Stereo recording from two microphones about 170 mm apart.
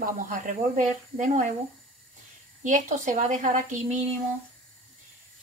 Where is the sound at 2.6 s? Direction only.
45° right (ahead or behind).